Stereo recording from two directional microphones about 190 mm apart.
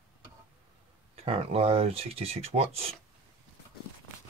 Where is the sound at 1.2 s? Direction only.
30° right (ahead or behind).